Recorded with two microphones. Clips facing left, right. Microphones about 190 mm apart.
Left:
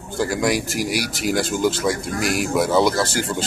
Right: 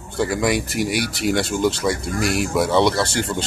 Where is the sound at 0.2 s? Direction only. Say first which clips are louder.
Right 1 dB; centre (ahead or behind).